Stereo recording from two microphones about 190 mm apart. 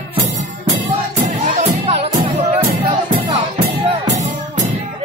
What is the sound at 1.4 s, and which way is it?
Music, 35° right (ahead or behind).